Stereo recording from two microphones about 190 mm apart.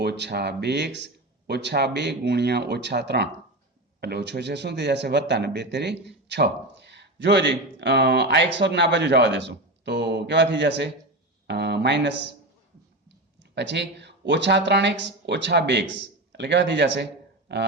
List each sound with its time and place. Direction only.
0.0 s speech: 60° right (ahead or behind)
13.6 s speech: 65° right (ahead or behind)